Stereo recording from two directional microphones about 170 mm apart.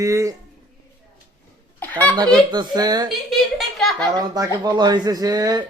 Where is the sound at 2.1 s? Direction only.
25° right (ahead or behind).